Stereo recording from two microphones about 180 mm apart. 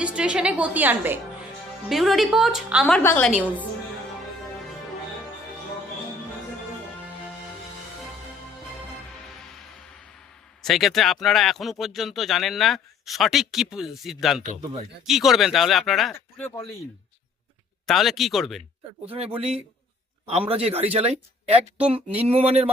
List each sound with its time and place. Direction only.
0.0 s a woman's voice: 5° right (ahead or behind)
3.0 s a woman's voice: 15° left (ahead or behind)
9.2 s music: centre (ahead or behind)
10.6 s speech: centre (ahead or behind)
14.6 s speech: 30° right (ahead or behind)
15.0 s speech: centre (ahead or behind)
16.1 s speech: 15° left (ahead or behind)
17.8 s speech: centre (ahead or behind)
19.0 s speech: 30° right (ahead or behind)